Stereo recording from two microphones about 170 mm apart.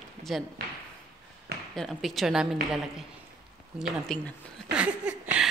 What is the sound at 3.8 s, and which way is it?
A woman's voice, centre (ahead or behind).